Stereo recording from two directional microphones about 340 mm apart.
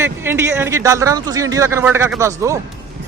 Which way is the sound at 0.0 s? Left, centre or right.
Centre.